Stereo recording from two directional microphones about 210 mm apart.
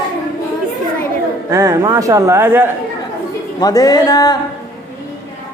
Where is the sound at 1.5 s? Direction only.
15° right (ahead or behind).